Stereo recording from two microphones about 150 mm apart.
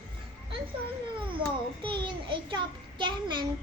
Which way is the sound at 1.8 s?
35° right (ahead or behind).